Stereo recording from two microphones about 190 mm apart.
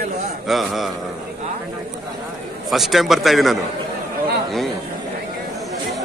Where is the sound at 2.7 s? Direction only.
Centre (ahead or behind).